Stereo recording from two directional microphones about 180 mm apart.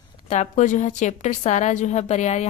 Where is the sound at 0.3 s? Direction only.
40° left (ahead or behind).